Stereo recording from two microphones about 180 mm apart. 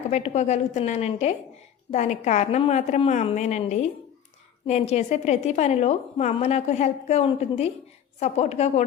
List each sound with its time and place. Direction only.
0.1 s a woman's voice: 40° left (ahead or behind)